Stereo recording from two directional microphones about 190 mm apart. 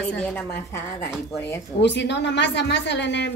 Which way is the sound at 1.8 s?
65° left (ahead or behind).